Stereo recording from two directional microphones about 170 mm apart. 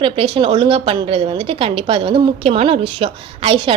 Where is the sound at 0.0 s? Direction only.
35° right (ahead or behind).